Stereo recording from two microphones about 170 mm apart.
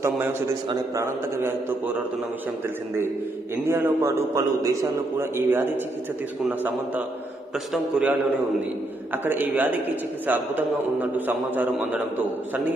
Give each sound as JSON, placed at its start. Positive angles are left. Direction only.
{"t": 0.7, "sound": "a man's voice", "side_deg": -20}
{"t": 3.6, "sound": "a man's voice", "side_deg": -15}
{"t": 7.7, "sound": "a man's voice", "side_deg": -5}
{"t": 9.2, "sound": "a man's voice", "side_deg": -10}